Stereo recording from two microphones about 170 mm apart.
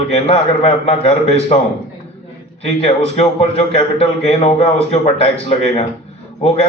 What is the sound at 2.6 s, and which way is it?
A man's voice, 40° left (ahead or behind).